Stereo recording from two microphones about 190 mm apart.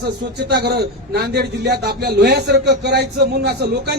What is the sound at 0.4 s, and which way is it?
A man's voice, 60° right (ahead or behind).